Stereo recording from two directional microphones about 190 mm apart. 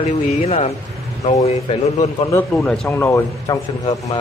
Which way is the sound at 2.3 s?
10° left (ahead or behind).